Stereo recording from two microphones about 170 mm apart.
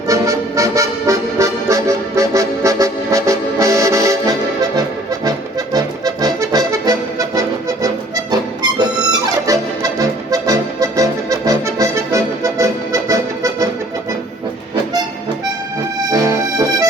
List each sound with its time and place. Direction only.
0.1 s music: 20° right (ahead or behind)
9.5 s accordion: 20° right (ahead or behind)
16.0 s accordion: 25° right (ahead or behind)